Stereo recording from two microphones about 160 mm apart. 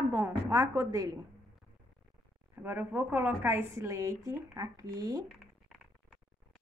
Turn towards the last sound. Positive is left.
turn(degrees=0)  # may be behind; listen again after turning